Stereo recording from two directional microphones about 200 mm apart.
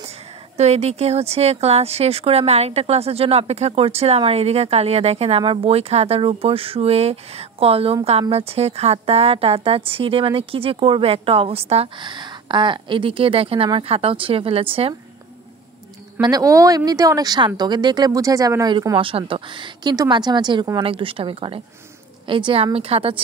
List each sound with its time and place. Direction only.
0.6 s speech: 35° right (ahead or behind)
16.2 s speech: 20° right (ahead or behind)